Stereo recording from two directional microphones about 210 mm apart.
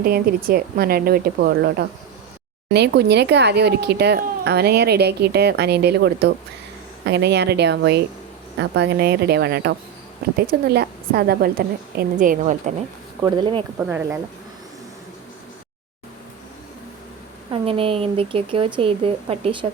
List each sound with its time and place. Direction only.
0.0 s speech: 45° right (ahead or behind)
13.2 s speech: 20° right (ahead or behind)
13.7 s speech: 10° right (ahead or behind)
17.5 s speech: 25° right (ahead or behind)